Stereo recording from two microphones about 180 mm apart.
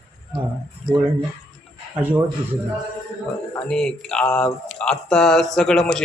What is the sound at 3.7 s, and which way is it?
A man's voice, 5° left (ahead or behind).